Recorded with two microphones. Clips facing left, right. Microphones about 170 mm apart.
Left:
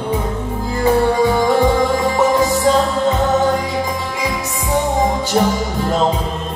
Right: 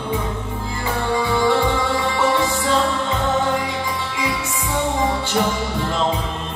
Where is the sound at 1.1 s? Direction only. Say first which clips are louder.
Left 4 dB; 40° left (ahead or behind).